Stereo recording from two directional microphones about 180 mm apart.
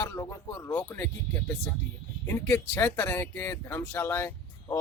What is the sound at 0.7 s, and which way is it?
Speech, 20° left (ahead or behind).